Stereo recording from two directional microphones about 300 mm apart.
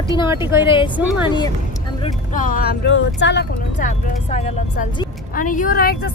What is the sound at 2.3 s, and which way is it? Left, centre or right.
Speech, left.